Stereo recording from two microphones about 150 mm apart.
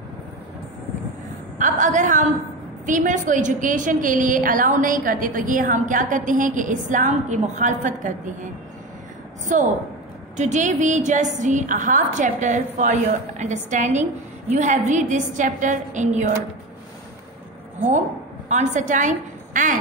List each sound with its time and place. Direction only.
1.6 s a sound: 55° right (ahead or behind)
2.9 s a woman's voice: 55° right (ahead or behind)
9.5 s a woman's voice: 55° right (ahead or behind)
18.5 s a woman's voice: 55° right (ahead or behind)